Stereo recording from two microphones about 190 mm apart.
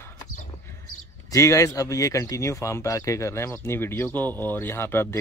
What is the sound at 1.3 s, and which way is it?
Speech, 15° left (ahead or behind).